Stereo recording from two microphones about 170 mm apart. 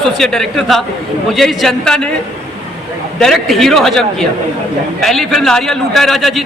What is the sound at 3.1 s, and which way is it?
A man's voice, centre (ahead or behind).